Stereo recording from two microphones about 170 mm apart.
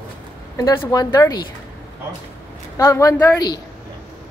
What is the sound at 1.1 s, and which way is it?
Speech, 20° left (ahead or behind).